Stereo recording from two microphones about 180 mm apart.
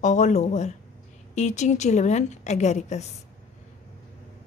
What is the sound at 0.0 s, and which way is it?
Speech, 40° left (ahead or behind).